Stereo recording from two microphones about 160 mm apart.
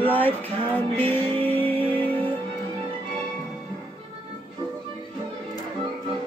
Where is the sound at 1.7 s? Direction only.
35° right (ahead or behind).